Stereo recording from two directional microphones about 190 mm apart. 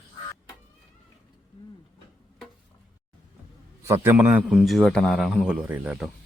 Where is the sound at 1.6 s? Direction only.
25° left (ahead or behind).